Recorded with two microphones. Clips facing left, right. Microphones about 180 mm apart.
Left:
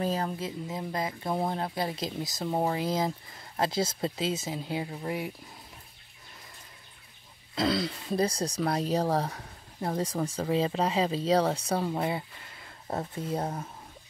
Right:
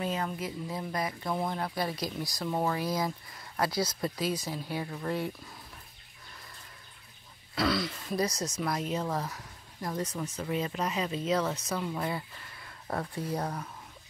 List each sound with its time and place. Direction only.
0.0 s speech: 35° left (ahead or behind)
0.7 s speech: 20° left (ahead or behind)
7.5 s speech: 25° left (ahead or behind)
12.0 s speech: 25° left (ahead or behind)